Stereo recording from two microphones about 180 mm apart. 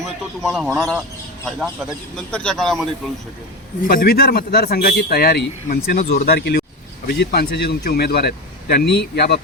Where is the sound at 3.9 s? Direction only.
55° left (ahead or behind).